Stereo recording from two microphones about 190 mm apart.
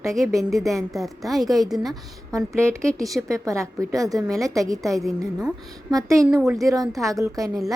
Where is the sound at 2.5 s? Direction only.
15° right (ahead or behind).